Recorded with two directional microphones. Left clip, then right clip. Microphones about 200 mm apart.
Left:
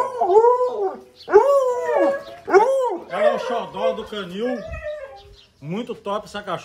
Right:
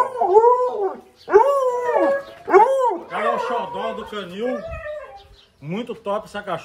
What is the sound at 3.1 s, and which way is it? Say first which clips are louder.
Speech: left 2 dB; 50° left (ahead or behind).